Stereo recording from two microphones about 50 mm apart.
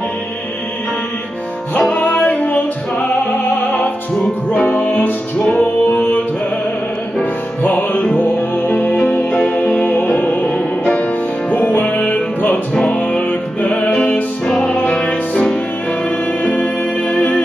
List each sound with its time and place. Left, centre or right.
1.8 s music: left
7.6 s music: left
8.9 s music: centre
9.8 s music: left
11.5 s music: left
12.7 s music: centre